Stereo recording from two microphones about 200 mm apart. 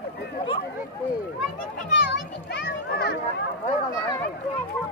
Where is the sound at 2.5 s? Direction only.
55° left (ahead or behind).